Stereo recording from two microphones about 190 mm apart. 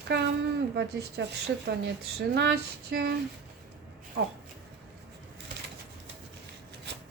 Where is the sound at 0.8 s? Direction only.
60° right (ahead or behind).